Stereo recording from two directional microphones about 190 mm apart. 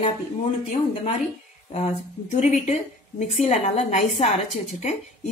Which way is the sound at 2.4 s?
35° left (ahead or behind).